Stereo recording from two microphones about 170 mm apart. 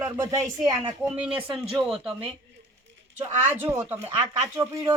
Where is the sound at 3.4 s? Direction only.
10° right (ahead or behind).